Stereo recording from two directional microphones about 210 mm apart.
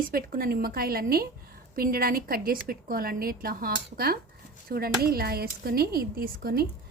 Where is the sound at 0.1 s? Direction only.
45° right (ahead or behind).